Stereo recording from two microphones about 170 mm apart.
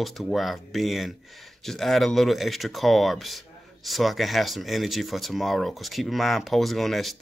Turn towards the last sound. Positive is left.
turn(degrees=0)  # may be behind; listen again after turning